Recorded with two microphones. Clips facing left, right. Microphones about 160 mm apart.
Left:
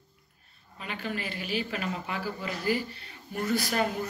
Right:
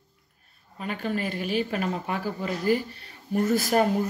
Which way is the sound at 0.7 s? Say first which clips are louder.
Right 6 dB; 40° right (ahead or behind).